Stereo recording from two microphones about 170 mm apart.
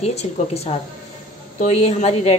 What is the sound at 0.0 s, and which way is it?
Speech, 40° left (ahead or behind).